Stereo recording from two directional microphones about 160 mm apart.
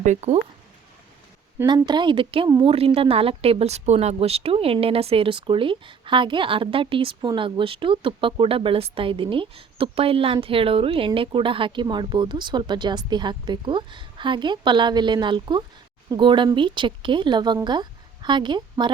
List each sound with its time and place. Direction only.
0.0 s speech: 45° right (ahead or behind)
1.6 s a woman's voice: 30° right (ahead or behind)